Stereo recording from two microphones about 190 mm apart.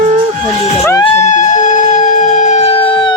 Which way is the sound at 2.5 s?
30° left (ahead or behind).